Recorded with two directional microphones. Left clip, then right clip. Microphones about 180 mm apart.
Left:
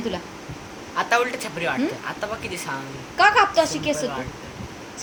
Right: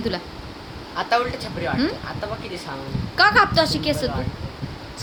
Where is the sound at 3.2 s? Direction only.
50° right (ahead or behind).